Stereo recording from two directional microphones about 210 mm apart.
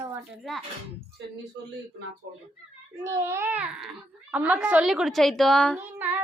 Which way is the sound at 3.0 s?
10° right (ahead or behind).